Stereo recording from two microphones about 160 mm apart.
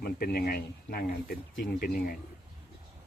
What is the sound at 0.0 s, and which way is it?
Speech, 75° left (ahead or behind).